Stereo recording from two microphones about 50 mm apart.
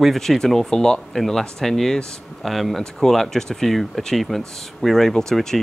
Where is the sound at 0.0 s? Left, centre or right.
Centre.